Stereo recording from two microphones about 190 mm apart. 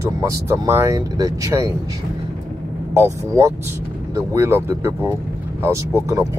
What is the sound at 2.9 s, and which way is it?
Speech, 15° right (ahead or behind).